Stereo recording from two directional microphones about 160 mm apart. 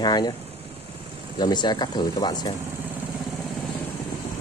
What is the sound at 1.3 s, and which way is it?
Speech, 25° left (ahead or behind).